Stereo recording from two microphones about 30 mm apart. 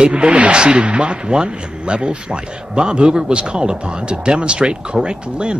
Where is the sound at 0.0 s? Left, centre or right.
Right.